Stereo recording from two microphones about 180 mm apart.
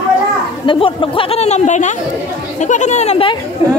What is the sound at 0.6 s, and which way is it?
Speech, 30° left (ahead or behind).